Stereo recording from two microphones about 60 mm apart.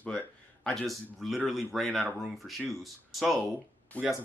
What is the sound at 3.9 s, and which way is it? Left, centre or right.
Speech, left.